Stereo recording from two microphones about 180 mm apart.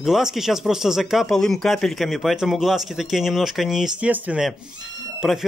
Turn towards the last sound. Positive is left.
turn(degrees=0)  # may be behind; listen again after turning